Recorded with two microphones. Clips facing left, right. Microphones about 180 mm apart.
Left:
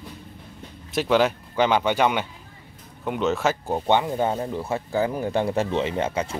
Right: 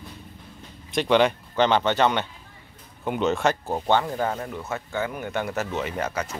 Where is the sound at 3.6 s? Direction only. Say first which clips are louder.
Left 1 dB; 10° left (ahead or behind).